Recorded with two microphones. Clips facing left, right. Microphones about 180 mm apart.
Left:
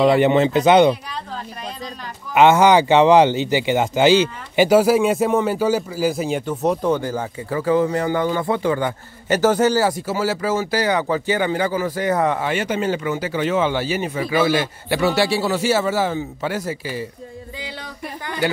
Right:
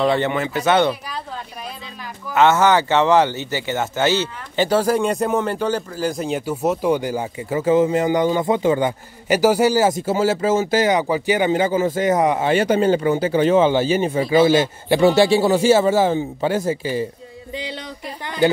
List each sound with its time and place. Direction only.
0.0 s speech: 10° left (ahead or behind)
0.3 s speech: 20° left (ahead or behind)
2.3 s speech: 15° left (ahead or behind); by 12.4 s 15° right (ahead or behind)
12.4 s speech: 35° right (ahead or behind)